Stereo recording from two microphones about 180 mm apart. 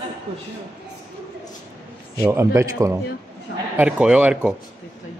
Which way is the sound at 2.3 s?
15° right (ahead or behind).